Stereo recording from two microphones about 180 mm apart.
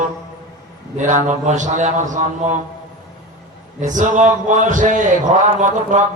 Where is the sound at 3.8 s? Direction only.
45° right (ahead or behind).